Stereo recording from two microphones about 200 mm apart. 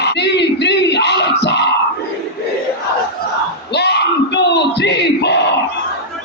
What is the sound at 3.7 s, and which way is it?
Battle cry, 55° left (ahead or behind).